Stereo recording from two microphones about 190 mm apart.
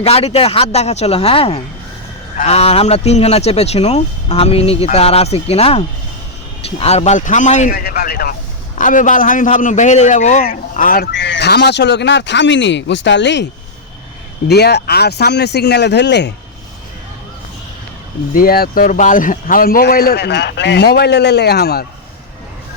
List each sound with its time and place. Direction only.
0.0 s a man's voice: 30° left (ahead or behind); by 16.3 s 65° left (ahead or behind)
18.3 s speech: 50° left (ahead or behind)